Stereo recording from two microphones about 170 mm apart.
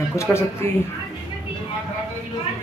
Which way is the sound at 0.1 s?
15° left (ahead or behind).